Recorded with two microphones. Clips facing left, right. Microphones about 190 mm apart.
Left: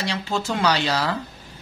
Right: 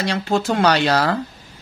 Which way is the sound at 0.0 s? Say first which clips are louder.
Right 6 dB; 55° right (ahead or behind).